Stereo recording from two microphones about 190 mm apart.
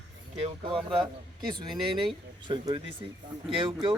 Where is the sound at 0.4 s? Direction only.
30° right (ahead or behind).